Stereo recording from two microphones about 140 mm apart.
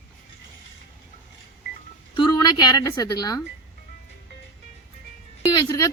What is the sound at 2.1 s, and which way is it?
A woman's voice, 35° left (ahead or behind).